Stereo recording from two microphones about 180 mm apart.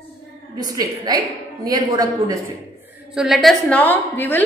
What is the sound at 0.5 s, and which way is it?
A woman's voice, 20° right (ahead or behind).